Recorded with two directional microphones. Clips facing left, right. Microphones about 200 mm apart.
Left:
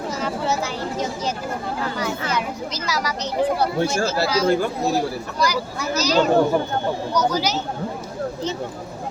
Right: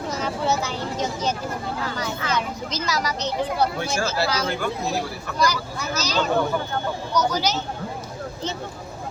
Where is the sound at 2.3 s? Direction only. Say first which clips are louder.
Left 1 dB; 10° left (ahead or behind).